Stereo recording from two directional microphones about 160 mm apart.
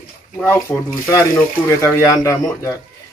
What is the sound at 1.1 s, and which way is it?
Speech, 20° left (ahead or behind).